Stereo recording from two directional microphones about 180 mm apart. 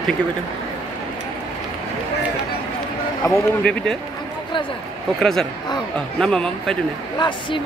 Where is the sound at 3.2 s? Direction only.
15° left (ahead or behind).